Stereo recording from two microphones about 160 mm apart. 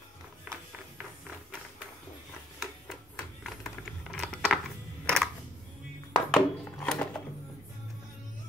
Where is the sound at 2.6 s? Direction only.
Centre (ahead or behind).